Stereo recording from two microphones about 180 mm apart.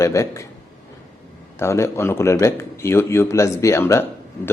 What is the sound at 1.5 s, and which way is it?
Speech, 15° left (ahead or behind).